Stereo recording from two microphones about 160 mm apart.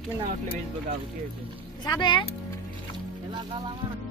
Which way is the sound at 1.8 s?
25° left (ahead or behind).